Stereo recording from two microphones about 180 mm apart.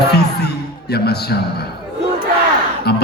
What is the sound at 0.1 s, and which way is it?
A man's voice, 65° left (ahead or behind).